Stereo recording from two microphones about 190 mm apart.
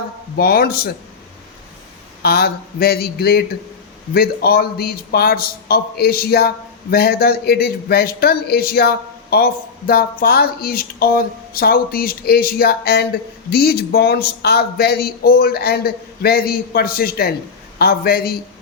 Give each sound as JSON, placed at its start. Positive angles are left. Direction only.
{"t": 0.3, "sound": "speech", "side_deg": 55}
{"t": 2.2, "sound": "speech", "side_deg": 55}